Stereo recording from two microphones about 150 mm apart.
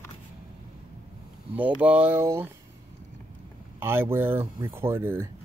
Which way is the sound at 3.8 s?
15° right (ahead or behind).